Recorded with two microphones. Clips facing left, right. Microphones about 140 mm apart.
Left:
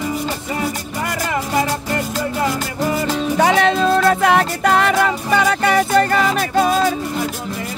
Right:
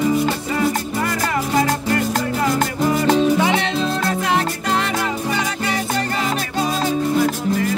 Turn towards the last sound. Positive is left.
turn(degrees=60)  # may be behind; listen again after turning